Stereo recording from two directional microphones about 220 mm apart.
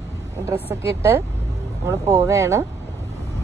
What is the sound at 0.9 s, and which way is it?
Speech, 15° right (ahead or behind).